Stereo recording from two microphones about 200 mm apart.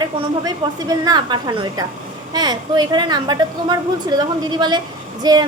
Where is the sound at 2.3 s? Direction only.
20° right (ahead or behind).